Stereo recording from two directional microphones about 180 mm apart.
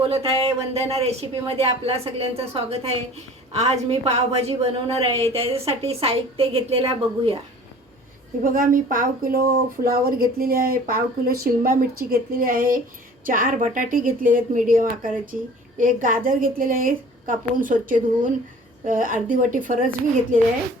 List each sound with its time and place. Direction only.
0.1 s speech: 30° right (ahead or behind)
8.4 s speech: 50° right (ahead or behind)